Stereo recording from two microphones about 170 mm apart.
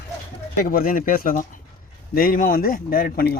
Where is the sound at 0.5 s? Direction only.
60° left (ahead or behind).